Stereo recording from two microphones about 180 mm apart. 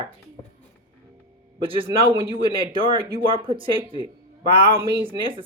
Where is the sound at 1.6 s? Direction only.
30° right (ahead or behind).